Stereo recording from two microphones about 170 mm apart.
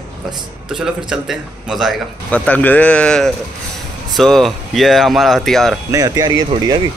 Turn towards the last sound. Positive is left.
turn(degrees=-25)  # may be behind; listen again after turning